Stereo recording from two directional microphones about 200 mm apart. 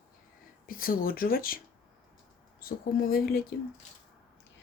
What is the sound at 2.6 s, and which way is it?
Speech, 50° left (ahead or behind).